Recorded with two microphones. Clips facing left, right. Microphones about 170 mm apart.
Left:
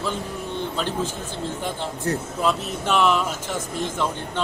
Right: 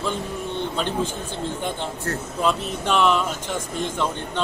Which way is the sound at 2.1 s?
15° left (ahead or behind).